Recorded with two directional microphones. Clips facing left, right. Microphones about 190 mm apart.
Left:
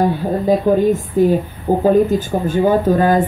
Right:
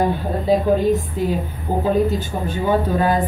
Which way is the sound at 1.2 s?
50° left (ahead or behind).